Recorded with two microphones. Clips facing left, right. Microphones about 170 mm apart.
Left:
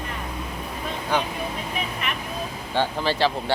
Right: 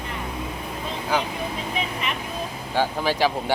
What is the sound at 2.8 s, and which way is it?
Speech, 10° right (ahead or behind).